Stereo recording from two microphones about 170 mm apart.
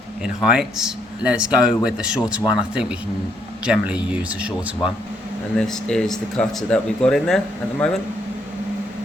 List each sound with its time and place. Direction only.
0.2 s a man's voice: 5° right (ahead or behind)
5.5 s a man's voice: 5° left (ahead or behind)